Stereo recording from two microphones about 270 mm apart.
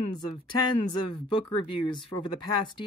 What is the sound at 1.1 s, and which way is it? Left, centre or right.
Speech, centre.